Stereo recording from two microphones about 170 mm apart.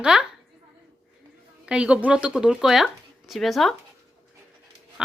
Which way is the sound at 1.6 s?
5° right (ahead or behind).